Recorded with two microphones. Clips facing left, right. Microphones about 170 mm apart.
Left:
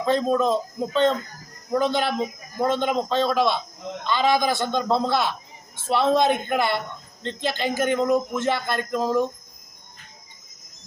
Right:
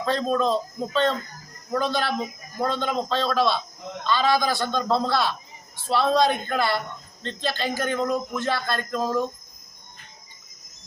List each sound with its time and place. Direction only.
0.0 s a man's voice: 15° left (ahead or behind)